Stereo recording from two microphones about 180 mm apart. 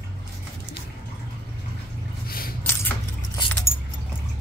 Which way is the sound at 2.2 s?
55° left (ahead or behind).